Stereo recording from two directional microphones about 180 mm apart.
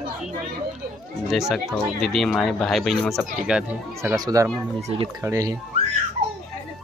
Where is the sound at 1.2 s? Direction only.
Centre (ahead or behind).